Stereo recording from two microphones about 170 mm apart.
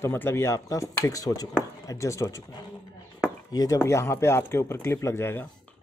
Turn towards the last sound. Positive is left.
turn(degrees=15)  # may be behind; listen again after turning